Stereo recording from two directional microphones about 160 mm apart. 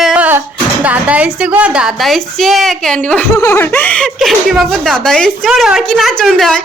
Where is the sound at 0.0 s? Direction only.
10° right (ahead or behind).